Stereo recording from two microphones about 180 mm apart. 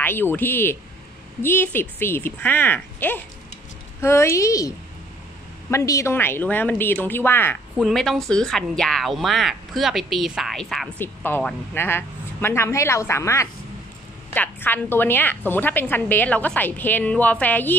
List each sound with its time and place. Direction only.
0.0 s a woman's voice: 10° left (ahead or behind)
7.7 s a woman's voice: centre (ahead or behind)